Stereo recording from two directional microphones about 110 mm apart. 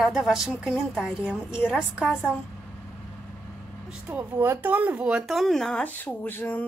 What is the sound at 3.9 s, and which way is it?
Speech, 10° right (ahead or behind).